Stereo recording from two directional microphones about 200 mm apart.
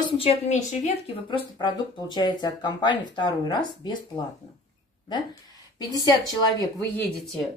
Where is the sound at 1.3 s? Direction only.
20° left (ahead or behind).